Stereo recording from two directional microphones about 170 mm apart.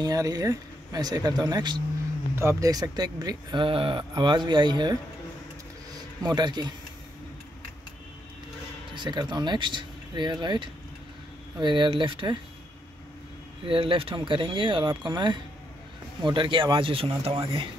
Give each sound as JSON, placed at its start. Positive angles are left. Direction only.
{"t": 0.0, "sound": "a man's voice", "side_deg": -20}
{"t": 6.2, "sound": "a man's voice", "side_deg": -25}
{"t": 8.9, "sound": "a man's voice", "side_deg": -25}
{"t": 13.7, "sound": "a man's voice", "side_deg": -30}